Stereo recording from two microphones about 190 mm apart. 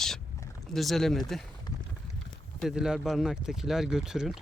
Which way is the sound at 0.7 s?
Centre (ahead or behind).